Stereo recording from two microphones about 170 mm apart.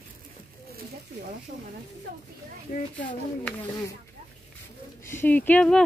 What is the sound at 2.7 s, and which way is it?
Speech, 50° left (ahead or behind).